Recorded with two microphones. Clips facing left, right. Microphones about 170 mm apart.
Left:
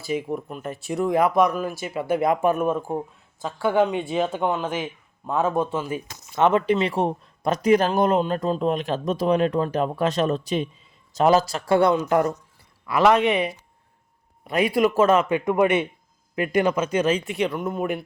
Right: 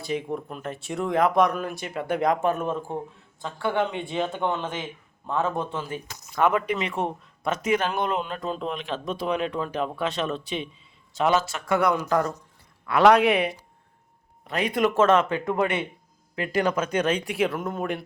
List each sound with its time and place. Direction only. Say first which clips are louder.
0.0 s speech: left 2 dB; 5° left (ahead or behind)
6.3 s speech: left 4 dB; 25° left (ahead or behind)
12.8 s speech: right 1 dB; centre (ahead or behind)
14.4 s speech: left 4 dB; 10° left (ahead or behind)